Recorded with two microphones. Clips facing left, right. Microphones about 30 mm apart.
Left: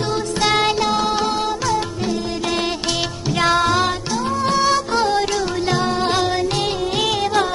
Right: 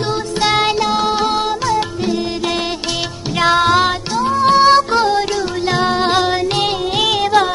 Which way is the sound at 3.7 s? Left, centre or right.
Right.